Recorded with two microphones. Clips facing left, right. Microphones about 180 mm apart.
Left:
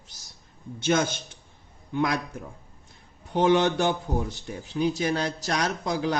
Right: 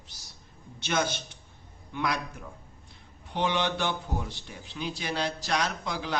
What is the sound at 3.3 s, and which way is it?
A man's voice, 45° left (ahead or behind).